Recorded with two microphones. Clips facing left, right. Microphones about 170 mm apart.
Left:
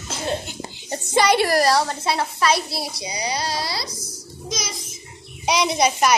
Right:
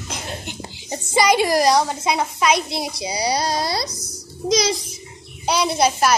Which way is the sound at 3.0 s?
30° right (ahead or behind).